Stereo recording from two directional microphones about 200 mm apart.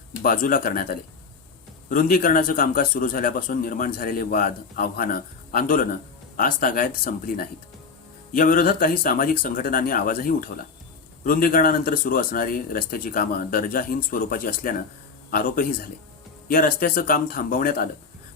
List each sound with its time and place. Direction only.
0.2 s a man's voice: 45° left (ahead or behind)